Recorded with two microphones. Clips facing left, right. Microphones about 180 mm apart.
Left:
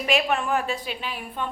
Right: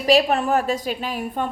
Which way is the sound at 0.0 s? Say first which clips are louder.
Right 6 dB; 35° right (ahead or behind).